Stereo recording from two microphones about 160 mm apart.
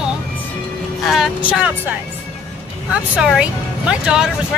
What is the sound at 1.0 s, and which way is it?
Speech, centre (ahead or behind).